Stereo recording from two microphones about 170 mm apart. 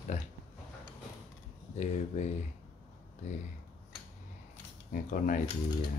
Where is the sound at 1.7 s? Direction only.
40° left (ahead or behind).